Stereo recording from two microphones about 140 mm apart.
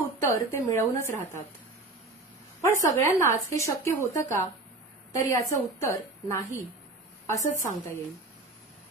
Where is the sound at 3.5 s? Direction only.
20° left (ahead or behind).